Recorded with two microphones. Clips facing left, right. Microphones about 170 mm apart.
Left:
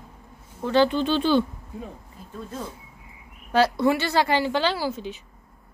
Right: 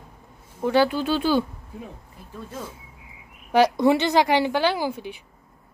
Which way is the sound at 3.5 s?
15° right (ahead or behind).